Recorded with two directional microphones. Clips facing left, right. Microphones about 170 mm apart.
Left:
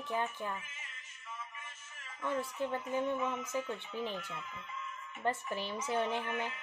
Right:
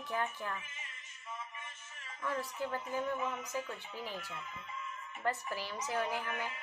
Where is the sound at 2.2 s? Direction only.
25° left (ahead or behind).